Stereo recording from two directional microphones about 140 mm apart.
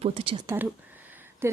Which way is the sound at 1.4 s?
15° right (ahead or behind).